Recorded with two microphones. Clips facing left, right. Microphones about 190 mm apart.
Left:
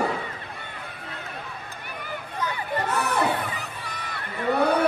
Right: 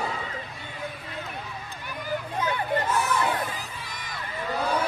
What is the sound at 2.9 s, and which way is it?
Crowd, 65° left (ahead or behind).